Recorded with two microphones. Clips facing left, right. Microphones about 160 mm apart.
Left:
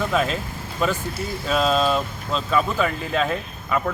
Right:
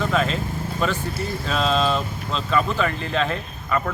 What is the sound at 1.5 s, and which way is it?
Speech, 5° left (ahead or behind).